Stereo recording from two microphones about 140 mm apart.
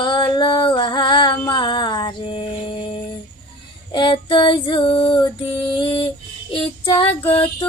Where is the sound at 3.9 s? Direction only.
35° left (ahead or behind).